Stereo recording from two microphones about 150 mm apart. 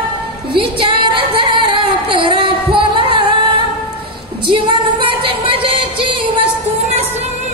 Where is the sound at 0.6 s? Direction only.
35° right (ahead or behind).